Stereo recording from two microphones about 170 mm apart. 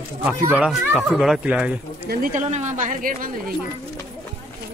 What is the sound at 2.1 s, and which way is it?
A woman's voice, 45° right (ahead or behind).